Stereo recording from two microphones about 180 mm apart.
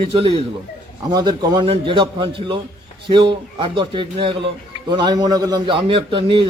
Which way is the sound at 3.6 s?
25° right (ahead or behind).